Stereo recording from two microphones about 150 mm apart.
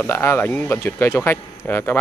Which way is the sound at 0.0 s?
15° left (ahead or behind).